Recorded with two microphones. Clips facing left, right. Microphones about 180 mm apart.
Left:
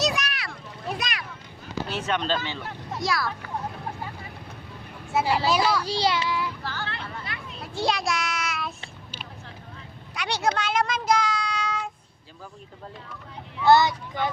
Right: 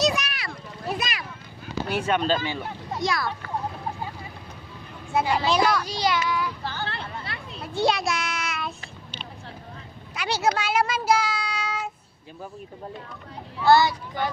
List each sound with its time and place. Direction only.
0.0 s a sound: centre (ahead or behind)
1.9 s a child's voice: 10° right (ahead or behind)
5.1 s a child's voice: centre (ahead or behind)
5.8 s a child's voice: 30° left (ahead or behind)
6.7 s a sound: 30° right (ahead or behind)
7.6 s child singing: centre (ahead or behind)
10.2 s child singing: 5° right (ahead or behind)
13.7 s speech: 20° left (ahead or behind)